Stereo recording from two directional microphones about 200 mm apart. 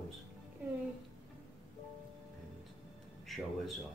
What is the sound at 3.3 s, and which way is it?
Speech, centre (ahead or behind).